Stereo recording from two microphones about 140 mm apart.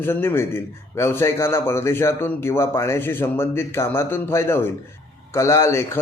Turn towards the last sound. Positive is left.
turn(degrees=20)  # may be behind; listen again after turning